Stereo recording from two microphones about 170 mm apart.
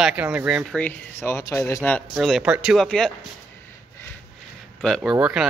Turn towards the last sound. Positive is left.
turn(degrees=-5)  # may be behind; listen again after turning